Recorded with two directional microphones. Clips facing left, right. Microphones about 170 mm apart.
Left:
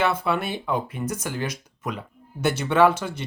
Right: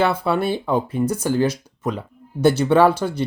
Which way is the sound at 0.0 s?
30° right (ahead or behind).